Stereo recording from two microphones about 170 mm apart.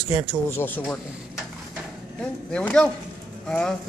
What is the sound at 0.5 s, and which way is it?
Speech, 10° left (ahead or behind).